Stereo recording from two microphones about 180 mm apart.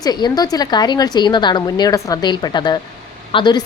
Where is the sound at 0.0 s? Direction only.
20° left (ahead or behind).